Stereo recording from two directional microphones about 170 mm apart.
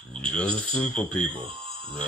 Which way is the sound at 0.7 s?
10° left (ahead or behind).